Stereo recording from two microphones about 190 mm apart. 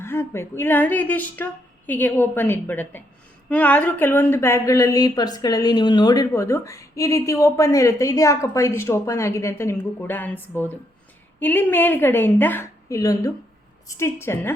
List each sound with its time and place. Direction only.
0.0 s speech: 15° left (ahead or behind)